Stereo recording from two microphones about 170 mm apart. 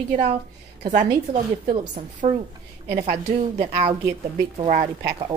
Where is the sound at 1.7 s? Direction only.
35° right (ahead or behind).